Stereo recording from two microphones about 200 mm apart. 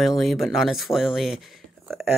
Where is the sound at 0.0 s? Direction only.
Centre (ahead or behind).